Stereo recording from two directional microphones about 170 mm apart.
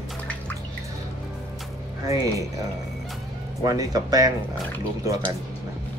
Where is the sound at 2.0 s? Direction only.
20° right (ahead or behind).